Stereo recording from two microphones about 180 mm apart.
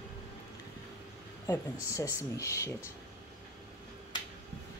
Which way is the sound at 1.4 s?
15° left (ahead or behind).